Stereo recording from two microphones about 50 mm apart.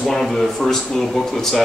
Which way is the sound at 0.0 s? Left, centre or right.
Centre.